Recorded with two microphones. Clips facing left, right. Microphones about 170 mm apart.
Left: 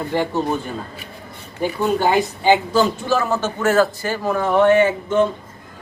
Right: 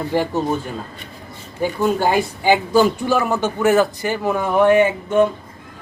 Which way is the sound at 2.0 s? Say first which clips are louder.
Even; 10° right (ahead or behind).